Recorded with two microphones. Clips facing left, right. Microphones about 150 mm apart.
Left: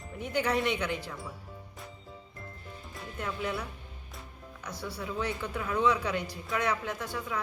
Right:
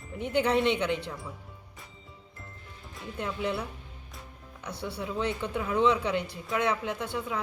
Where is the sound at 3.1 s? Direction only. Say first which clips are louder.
Right 3 dB; 25° right (ahead or behind).